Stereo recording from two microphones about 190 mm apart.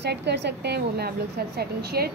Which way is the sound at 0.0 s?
60° right (ahead or behind).